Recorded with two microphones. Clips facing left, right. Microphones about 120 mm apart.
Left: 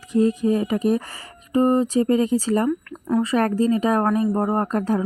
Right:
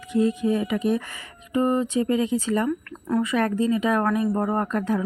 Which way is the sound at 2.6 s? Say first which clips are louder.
Left 3 dB; 15° left (ahead or behind).